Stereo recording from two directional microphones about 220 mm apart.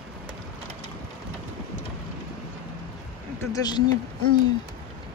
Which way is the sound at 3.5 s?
20° left (ahead or behind).